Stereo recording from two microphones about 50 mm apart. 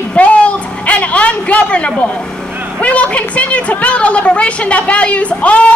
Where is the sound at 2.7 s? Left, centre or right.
Left.